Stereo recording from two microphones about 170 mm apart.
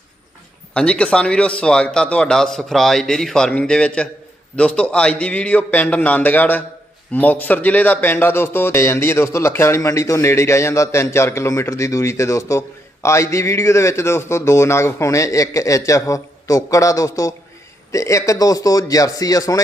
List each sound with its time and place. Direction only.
0.7 s speech: 5° left (ahead or behind)